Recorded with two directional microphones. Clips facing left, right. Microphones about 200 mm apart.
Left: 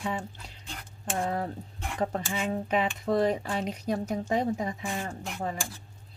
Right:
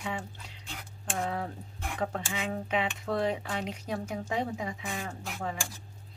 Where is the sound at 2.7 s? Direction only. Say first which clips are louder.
Left 4 dB; 40° left (ahead or behind).